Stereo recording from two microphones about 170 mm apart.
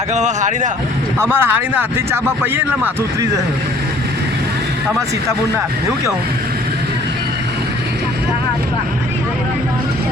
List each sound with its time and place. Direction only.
0.1 s speech: 45° right (ahead or behind)
1.2 s speech: 10° right (ahead or behind)